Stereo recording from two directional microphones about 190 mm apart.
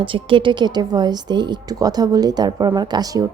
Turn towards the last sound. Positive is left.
turn(degrees=-20)  # may be behind; listen again after turning